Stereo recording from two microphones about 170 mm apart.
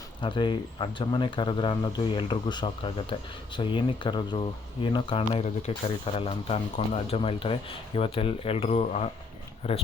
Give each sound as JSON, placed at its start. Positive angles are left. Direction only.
{"t": 0.2, "sound": "a man's voice", "side_deg": 30}